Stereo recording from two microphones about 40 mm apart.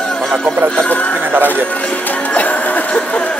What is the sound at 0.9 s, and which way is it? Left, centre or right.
Speech, left.